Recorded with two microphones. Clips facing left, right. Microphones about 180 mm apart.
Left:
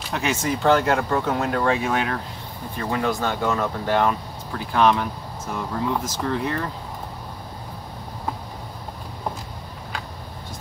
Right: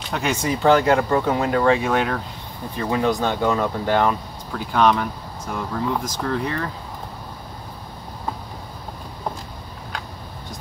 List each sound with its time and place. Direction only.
0.1 s speech: 5° left (ahead or behind)
0.6 s speech: 10° right (ahead or behind)
2.8 s speech: 15° right (ahead or behind)
3.9 s speech: centre (ahead or behind)